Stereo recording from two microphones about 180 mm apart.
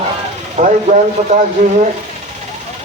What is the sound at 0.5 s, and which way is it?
Speech, 40° right (ahead or behind).